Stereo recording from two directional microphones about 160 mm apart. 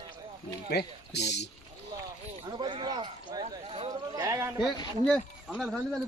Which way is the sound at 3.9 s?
20° right (ahead or behind).